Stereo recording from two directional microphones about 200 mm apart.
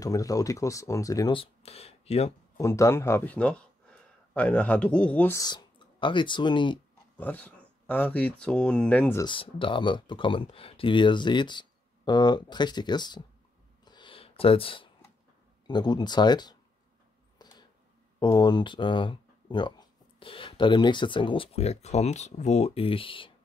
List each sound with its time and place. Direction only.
0.0 s speech: 15° left (ahead or behind)
2.5 s speech: 15° left (ahead or behind)
7.2 s speech: 10° left (ahead or behind)
9.2 s speech: 25° left (ahead or behind)
13.8 s a sound: 25° left (ahead or behind)
15.6 s speech: 20° left (ahead or behind)
18.2 s speech: 20° left (ahead or behind)